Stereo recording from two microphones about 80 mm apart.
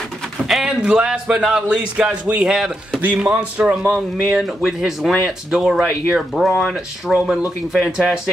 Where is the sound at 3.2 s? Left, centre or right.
Centre.